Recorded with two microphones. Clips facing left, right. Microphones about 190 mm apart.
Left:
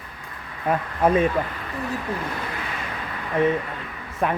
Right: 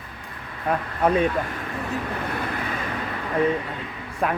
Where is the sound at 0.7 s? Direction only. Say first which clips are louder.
Left 1 dB; 5° left (ahead or behind).